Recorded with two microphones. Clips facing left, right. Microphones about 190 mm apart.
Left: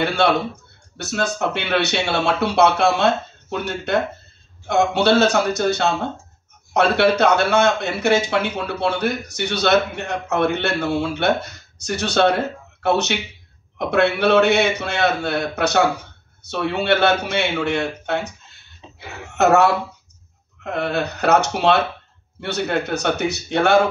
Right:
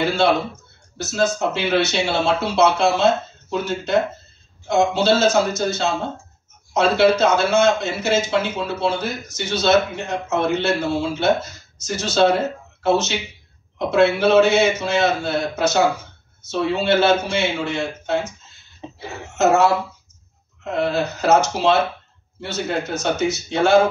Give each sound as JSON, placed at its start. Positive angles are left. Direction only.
{"t": 0.0, "sound": "a man's voice", "side_deg": 65}
{"t": 1.5, "sound": "a man's voice", "side_deg": 65}
{"t": 18.8, "sound": "a sound", "side_deg": -60}
{"t": 19.3, "sound": "a man's voice", "side_deg": 65}